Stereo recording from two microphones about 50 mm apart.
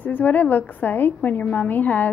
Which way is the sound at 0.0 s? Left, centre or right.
Left.